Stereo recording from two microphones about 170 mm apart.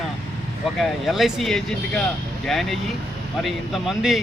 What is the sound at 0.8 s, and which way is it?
A man's voice, centre (ahead or behind).